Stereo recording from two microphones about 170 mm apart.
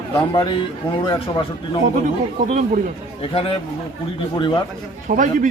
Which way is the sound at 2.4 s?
45° right (ahead or behind).